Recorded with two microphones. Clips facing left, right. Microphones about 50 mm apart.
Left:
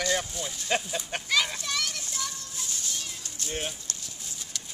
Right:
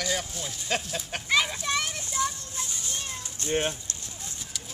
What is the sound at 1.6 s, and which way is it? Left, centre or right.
Children playing, centre.